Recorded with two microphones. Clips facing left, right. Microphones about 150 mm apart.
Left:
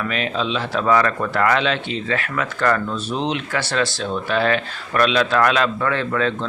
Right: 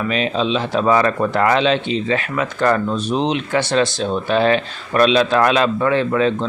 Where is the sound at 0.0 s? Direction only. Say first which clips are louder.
Right 4 dB; 20° right (ahead or behind).